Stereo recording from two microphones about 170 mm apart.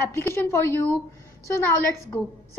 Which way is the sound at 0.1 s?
15° left (ahead or behind).